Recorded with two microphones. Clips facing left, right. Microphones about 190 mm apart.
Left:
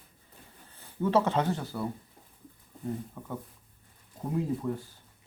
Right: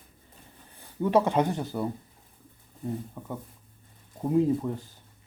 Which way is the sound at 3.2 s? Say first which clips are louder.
Right 3 dB; 5° right (ahead or behind).